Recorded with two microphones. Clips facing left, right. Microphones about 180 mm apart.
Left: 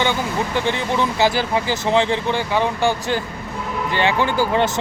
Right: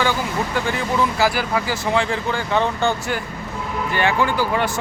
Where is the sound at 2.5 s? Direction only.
10° left (ahead or behind).